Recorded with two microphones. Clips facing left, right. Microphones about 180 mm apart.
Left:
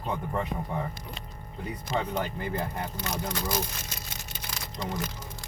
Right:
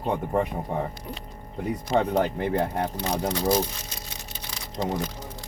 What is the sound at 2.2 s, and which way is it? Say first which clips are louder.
Speech: right 7 dB; 70° right (ahead or behind).